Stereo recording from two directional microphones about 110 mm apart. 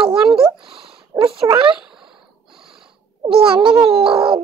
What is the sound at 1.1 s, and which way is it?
Speech, 30° right (ahead or behind).